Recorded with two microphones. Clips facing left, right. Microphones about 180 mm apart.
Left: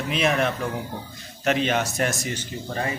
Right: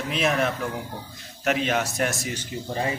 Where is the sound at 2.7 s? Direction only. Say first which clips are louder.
Right 1 dB; 20° right (ahead or behind).